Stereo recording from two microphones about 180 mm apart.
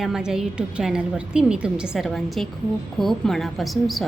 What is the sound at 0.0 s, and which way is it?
A woman's voice, 5° right (ahead or behind).